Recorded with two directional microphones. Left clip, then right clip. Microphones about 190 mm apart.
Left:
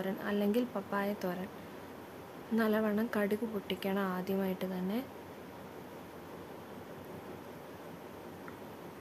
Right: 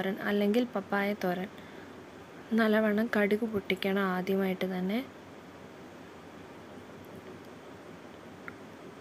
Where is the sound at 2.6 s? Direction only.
15° right (ahead or behind).